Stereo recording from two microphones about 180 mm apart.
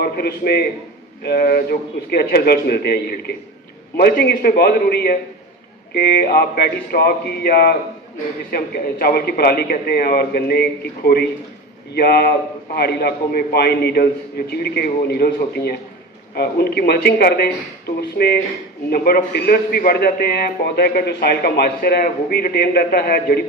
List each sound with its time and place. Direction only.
0.0 s a man's voice: 60° left (ahead or behind)